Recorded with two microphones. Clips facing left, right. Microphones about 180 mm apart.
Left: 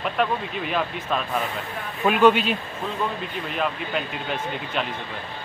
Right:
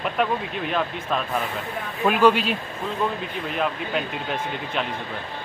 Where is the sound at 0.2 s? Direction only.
Centre (ahead or behind).